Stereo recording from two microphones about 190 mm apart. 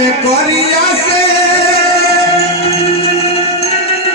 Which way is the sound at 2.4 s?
30° left (ahead or behind).